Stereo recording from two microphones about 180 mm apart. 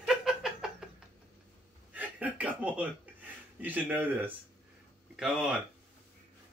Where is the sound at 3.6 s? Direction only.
10° right (ahead or behind).